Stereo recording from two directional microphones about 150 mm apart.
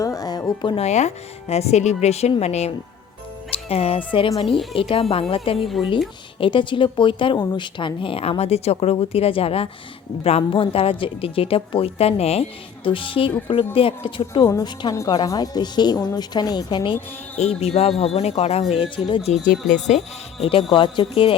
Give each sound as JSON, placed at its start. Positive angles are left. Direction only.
{"t": 0.0, "sound": "music", "side_deg": 25}
{"t": 0.8, "sound": "a woman's voice", "side_deg": 50}
{"t": 14.4, "sound": "a woman's voice", "side_deg": 25}
{"t": 17.3, "sound": "a woman's voice", "side_deg": 45}
{"t": 19.3, "sound": "speech", "side_deg": 60}
{"t": 20.4, "sound": "speech", "side_deg": 35}